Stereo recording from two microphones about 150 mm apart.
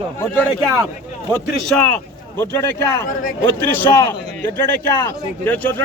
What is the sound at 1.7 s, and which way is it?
A man's voice, 15° left (ahead or behind).